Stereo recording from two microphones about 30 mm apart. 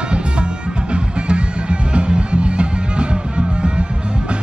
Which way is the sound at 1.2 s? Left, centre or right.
Right.